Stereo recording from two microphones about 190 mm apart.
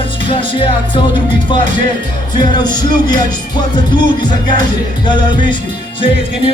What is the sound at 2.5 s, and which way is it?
Music, 20° left (ahead or behind).